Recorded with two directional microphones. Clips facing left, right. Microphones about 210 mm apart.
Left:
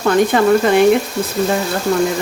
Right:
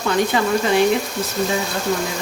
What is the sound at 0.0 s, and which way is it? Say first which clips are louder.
Speech: left 6 dB; 55° left (ahead or behind).